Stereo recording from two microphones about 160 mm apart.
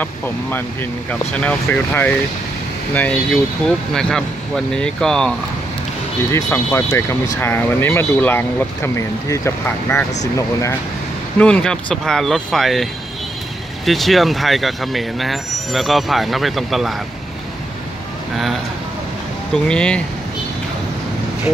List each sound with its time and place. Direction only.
0.0 s speech: 10° left (ahead or behind)
6.3 s speech: 15° left (ahead or behind)
11.3 s speech: 10° left (ahead or behind)
13.8 s speech: centre (ahead or behind)
19.5 s speech: 5° left (ahead or behind)